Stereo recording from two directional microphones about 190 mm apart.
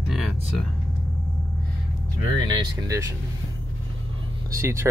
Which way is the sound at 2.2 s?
20° right (ahead or behind).